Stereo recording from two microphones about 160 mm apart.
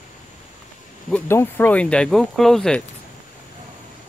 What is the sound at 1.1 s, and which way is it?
Speech, 15° left (ahead or behind).